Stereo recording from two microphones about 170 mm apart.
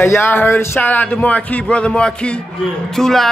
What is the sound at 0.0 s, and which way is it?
Speech, 15° left (ahead or behind).